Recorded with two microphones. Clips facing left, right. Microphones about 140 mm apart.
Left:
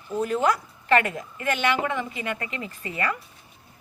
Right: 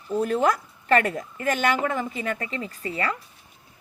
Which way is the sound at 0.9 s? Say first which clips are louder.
Right 1 dB; 35° right (ahead or behind).